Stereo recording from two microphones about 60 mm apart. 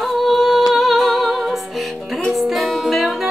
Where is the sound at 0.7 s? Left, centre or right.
Centre.